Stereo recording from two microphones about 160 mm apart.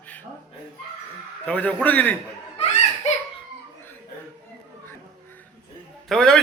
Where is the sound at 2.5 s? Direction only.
45° left (ahead or behind).